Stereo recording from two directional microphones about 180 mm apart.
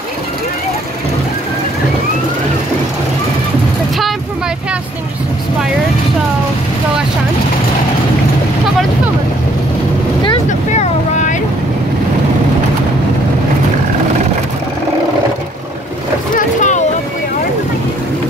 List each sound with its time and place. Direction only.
10.7 s boat: 40° left (ahead or behind)
16.3 s vehicle: 40° left (ahead or behind)